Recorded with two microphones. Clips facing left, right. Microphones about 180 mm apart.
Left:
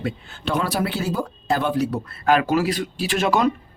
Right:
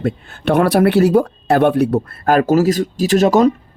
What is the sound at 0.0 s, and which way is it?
Speech, 55° right (ahead or behind).